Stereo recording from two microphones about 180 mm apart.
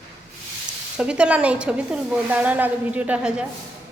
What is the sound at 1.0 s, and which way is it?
Speech, 5° right (ahead or behind).